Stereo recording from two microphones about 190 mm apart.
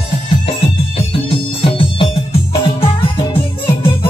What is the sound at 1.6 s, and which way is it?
Music, 25° left (ahead or behind).